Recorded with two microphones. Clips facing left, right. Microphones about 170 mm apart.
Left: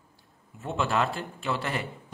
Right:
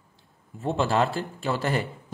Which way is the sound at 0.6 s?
35° right (ahead or behind).